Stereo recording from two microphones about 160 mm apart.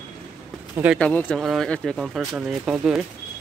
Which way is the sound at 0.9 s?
5° left (ahead or behind).